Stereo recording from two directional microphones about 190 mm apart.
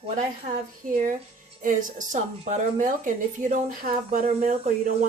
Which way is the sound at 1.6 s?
40° right (ahead or behind).